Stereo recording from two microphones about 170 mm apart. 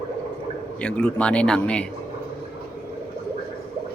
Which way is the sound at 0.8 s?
5° left (ahead or behind).